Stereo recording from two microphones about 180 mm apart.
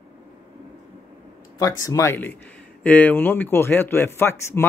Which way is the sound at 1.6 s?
20° left (ahead or behind).